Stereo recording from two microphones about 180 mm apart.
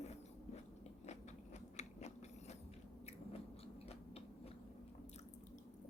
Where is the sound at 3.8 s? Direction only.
35° left (ahead or behind).